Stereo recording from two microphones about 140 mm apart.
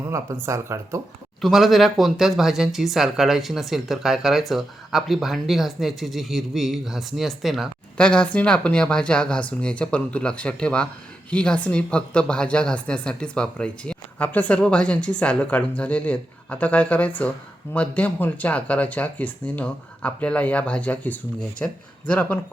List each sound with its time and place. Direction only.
0.0 s speech: 20° right (ahead or behind)
1.4 s speech: centre (ahead or behind)